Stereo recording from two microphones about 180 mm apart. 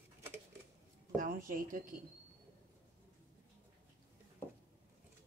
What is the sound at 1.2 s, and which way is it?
Speech, 50° right (ahead or behind).